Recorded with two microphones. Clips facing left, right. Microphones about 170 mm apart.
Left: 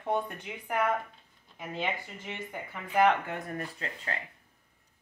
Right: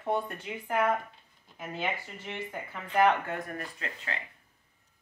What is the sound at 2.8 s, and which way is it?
Speech, 10° left (ahead or behind).